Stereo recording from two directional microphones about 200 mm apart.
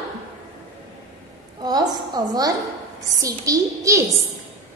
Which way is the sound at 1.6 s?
20° right (ahead or behind).